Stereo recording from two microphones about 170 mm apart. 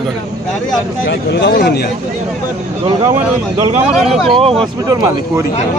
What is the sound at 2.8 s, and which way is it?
Speech, 30° right (ahead or behind).